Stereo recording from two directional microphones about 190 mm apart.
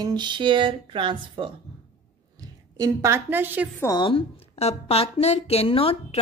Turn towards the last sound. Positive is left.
turn(degrees=30)  # may be behind; listen again after turning